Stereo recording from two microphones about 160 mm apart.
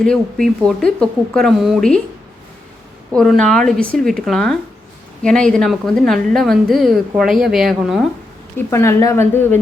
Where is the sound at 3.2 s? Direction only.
5° left (ahead or behind).